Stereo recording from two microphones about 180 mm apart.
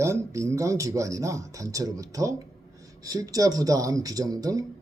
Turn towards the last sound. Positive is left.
turn(degrees=-20)  # may be behind; listen again after turning